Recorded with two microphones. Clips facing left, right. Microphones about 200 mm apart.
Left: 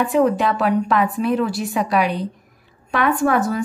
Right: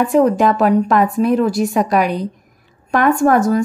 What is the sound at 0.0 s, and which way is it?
A woman's voice, 40° right (ahead or behind).